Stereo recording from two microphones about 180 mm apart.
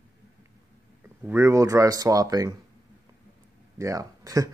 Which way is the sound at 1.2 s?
15° right (ahead or behind).